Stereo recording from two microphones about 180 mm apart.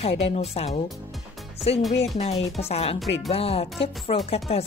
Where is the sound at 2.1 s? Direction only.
35° left (ahead or behind).